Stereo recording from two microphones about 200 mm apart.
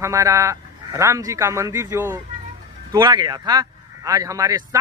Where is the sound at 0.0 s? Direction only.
15° right (ahead or behind).